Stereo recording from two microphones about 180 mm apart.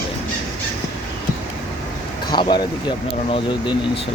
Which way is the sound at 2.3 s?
25° left (ahead or behind).